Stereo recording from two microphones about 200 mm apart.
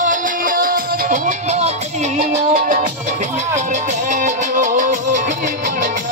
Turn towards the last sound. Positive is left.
turn(degrees=-40)  # may be behind; listen again after turning